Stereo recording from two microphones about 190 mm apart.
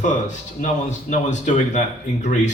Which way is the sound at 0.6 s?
40° left (ahead or behind).